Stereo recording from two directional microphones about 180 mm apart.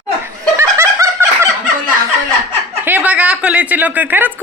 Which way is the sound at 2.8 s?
10° right (ahead or behind).